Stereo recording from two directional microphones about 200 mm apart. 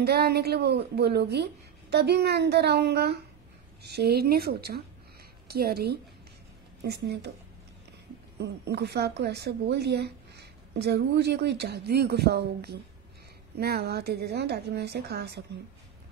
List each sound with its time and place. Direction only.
0.0 s a woman's voice: 50° right (ahead or behind)
8.4 s a woman's voice: 55° right (ahead or behind)